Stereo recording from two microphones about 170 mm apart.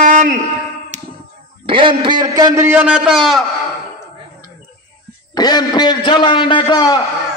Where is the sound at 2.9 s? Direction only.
Centre (ahead or behind).